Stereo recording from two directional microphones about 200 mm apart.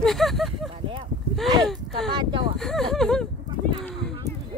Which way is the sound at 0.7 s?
30° right (ahead or behind).